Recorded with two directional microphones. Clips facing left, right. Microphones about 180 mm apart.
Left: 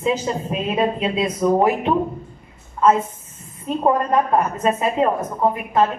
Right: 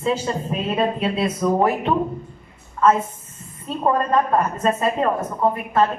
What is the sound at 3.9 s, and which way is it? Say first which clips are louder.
A woman's voice: left 1 dB; 15° left (ahead or behind).